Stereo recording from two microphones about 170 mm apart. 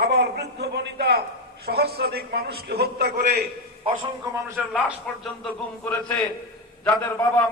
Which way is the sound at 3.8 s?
30° right (ahead or behind).